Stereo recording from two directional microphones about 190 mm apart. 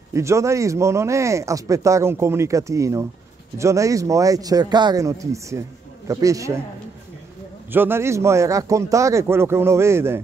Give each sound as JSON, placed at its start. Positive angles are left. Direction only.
{"t": 0.1, "sound": "speech", "side_deg": -15}
{"t": 7.7, "sound": "speech", "side_deg": -10}